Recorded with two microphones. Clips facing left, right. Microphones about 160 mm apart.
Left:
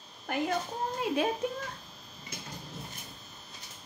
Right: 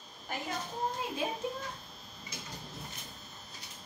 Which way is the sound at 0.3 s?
60° left (ahead or behind).